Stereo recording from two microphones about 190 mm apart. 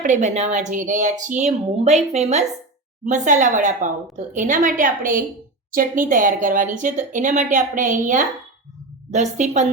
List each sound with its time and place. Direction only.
0.0 s a woman's voice: 40° right (ahead or behind)